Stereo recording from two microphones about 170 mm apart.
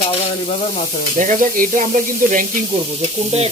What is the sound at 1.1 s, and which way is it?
Sizzle, 45° right (ahead or behind).